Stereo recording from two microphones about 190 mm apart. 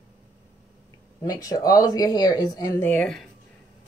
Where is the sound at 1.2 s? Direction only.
20° left (ahead or behind).